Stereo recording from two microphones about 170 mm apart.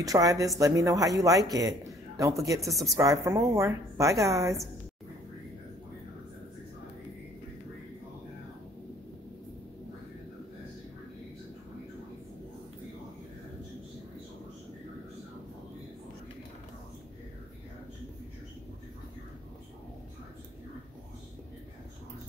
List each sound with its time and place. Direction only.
0.0 s a man's voice: 20° right (ahead or behind)
2.6 s a woman's voice: centre (ahead or behind)
2.9 s a man's voice: 20° right (ahead or behind)